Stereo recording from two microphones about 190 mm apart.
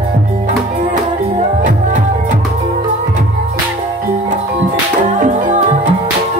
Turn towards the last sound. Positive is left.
turn(degrees=-40)  # may be behind; listen again after turning